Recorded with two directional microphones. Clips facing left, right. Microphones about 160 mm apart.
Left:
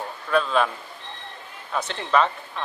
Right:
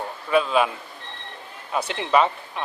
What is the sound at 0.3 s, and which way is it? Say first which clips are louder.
Speech: right 2 dB; 10° right (ahead or behind).